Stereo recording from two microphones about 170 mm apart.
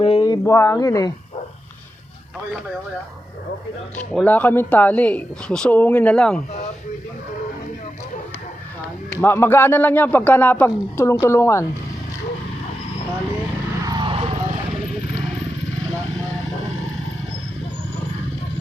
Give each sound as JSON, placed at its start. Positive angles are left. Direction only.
{"t": 0.0, "sound": "speech", "side_deg": 30}
{"t": 3.9, "sound": "speech", "side_deg": 10}
{"t": 9.0, "sound": "speech", "side_deg": 15}
{"t": 13.8, "sound": "vehicle", "side_deg": -25}